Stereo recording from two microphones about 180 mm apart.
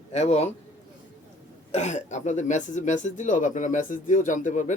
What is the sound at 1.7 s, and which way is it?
Speech, 40° left (ahead or behind).